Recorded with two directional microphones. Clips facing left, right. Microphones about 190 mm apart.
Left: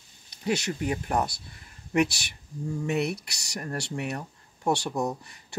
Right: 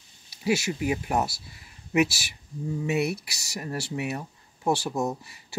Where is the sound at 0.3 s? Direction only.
5° right (ahead or behind).